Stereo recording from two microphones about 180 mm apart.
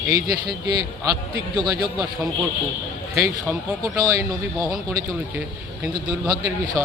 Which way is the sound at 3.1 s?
15° right (ahead or behind).